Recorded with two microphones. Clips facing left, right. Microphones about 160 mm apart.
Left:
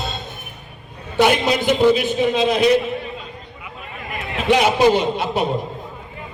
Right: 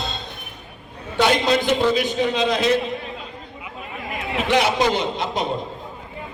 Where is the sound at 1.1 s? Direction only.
10° left (ahead or behind).